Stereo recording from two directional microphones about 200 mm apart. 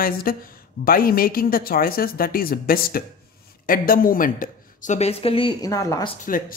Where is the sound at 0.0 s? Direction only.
45° left (ahead or behind); by 6.1 s 20° left (ahead or behind).